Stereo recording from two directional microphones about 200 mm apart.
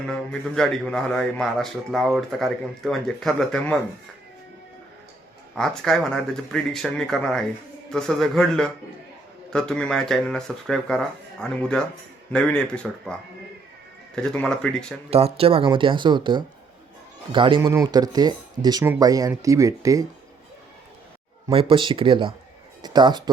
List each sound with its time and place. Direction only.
0.1 s a man's voice: 5° left (ahead or behind)
5.5 s a man's voice: centre (ahead or behind)
14.2 s a man's voice: 5° left (ahead or behind)
15.1 s speech: 30° right (ahead or behind)
21.5 s speech: 25° right (ahead or behind)